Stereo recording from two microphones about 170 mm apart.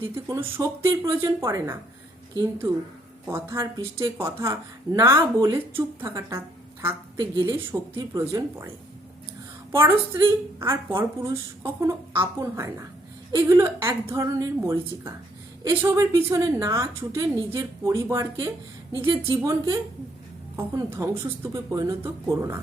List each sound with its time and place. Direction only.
0.3 s a woman's voice: 15° right (ahead or behind)
9.7 s a woman's voice: 15° right (ahead or behind)
20.6 s a woman's voice: 15° right (ahead or behind)